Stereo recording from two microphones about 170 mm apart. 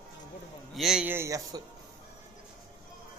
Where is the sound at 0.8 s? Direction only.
5° right (ahead or behind).